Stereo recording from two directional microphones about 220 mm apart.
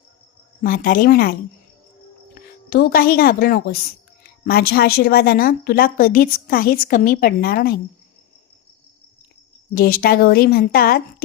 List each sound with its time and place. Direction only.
0.6 s a woman's voice: 40° left (ahead or behind)
2.6 s speech: 45° left (ahead or behind)
9.7 s speech: 40° left (ahead or behind)